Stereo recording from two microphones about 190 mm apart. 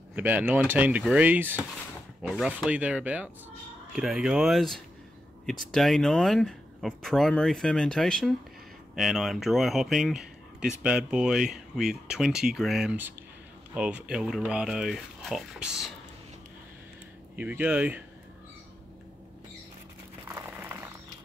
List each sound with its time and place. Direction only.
0.1 s speech: 10° right (ahead or behind)
17.4 s speech: 10° right (ahead or behind)
20.2 s a sound: 15° right (ahead or behind)